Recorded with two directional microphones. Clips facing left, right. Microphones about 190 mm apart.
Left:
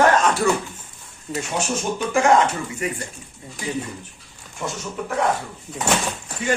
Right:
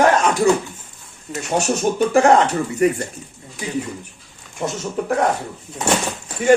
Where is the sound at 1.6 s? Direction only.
35° right (ahead or behind).